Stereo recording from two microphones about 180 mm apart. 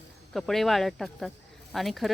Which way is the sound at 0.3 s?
Centre (ahead or behind).